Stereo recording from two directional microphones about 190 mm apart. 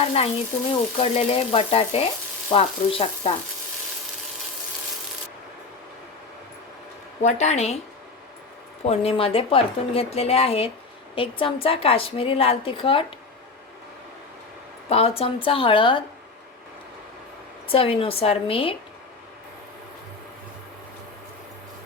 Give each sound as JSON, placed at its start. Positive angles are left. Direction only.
{"t": 0.0, "sound": "speech", "side_deg": 30}
{"t": 7.2, "sound": "speech", "side_deg": 35}
{"t": 8.8, "sound": "a woman's voice", "side_deg": 30}
{"t": 14.8, "sound": "a woman's voice", "side_deg": 30}
{"t": 17.7, "sound": "a woman's voice", "side_deg": 30}